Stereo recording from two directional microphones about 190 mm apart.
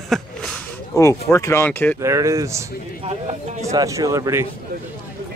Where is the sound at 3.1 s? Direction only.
35° right (ahead or behind).